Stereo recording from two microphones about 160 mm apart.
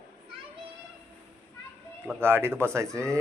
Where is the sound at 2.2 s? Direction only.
15° right (ahead or behind).